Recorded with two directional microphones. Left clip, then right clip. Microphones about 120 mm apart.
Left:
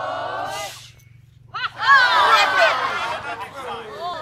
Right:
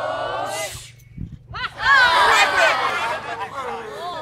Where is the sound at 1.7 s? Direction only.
60° right (ahead or behind).